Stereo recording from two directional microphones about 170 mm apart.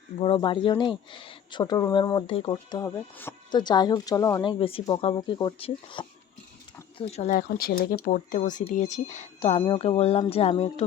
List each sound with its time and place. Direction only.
0.2 s speech: 30° left (ahead or behind); by 3.3 s 15° left (ahead or behind)
3.5 s speech: 25° left (ahead or behind)
7.3 s speech: 60° left (ahead or behind); by 10.8 s 35° left (ahead or behind)